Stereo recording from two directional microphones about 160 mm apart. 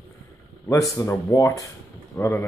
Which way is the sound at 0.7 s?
20° left (ahead or behind).